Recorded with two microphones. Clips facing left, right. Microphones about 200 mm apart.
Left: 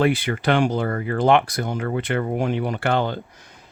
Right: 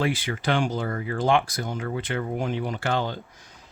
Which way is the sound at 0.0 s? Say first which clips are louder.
Left 6 dB; 60° left (ahead or behind).